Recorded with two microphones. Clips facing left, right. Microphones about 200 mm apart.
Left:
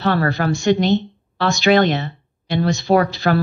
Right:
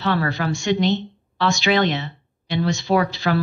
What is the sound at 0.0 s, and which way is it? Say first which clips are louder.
Speech: left 4 dB; 45° left (ahead or behind).